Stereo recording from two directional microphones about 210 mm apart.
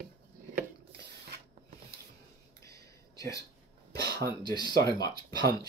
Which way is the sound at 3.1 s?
15° left (ahead or behind).